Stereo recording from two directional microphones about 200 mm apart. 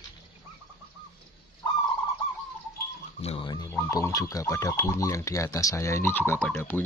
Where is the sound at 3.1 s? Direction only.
30° left (ahead or behind).